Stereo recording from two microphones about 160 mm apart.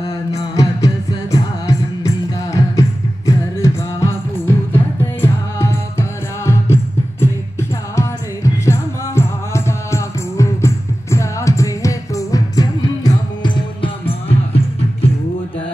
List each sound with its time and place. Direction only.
0.3 s music: 20° left (ahead or behind)
8.6 s music: 15° left (ahead or behind); by 15.0 s 40° left (ahead or behind)